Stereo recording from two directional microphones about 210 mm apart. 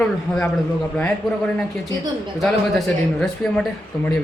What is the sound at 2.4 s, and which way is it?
Speech, centre (ahead or behind).